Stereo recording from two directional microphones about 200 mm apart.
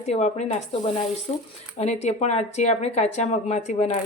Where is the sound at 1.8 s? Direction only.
35° left (ahead or behind).